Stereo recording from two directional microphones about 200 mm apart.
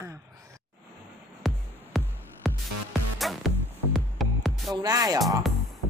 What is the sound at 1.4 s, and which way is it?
Music, centre (ahead or behind).